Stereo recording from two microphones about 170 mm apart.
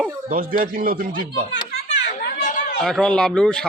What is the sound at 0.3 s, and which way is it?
Speech, 55° right (ahead or behind).